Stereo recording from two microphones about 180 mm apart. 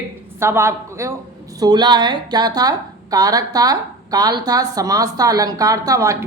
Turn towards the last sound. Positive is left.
turn(degrees=-15)  # may be behind; listen again after turning